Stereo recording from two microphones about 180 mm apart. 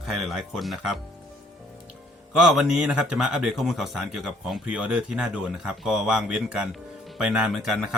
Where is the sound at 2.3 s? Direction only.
Centre (ahead or behind).